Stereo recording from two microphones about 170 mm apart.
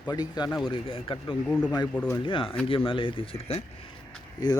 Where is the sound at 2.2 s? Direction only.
30° left (ahead or behind).